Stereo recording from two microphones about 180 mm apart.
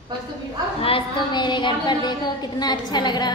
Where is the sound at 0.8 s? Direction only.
25° left (ahead or behind).